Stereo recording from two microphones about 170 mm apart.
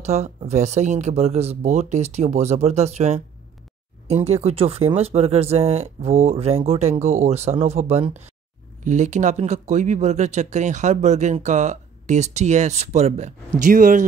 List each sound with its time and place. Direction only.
0.0 s speech: 40° right (ahead or behind)